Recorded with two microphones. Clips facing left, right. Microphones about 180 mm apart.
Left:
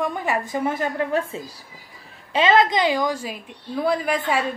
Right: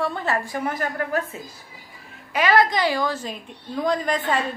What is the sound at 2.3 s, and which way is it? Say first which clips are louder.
A woman's voice: left 2 dB; 25° left (ahead or behind).